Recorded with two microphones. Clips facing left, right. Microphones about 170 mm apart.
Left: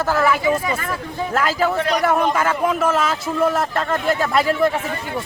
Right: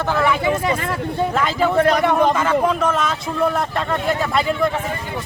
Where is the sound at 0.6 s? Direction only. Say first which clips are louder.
Right 3 dB; 30° right (ahead or behind).